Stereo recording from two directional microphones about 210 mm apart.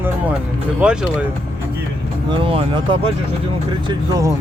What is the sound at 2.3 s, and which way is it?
Speech, 25° right (ahead or behind).